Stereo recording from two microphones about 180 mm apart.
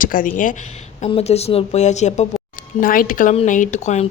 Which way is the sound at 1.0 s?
35° left (ahead or behind).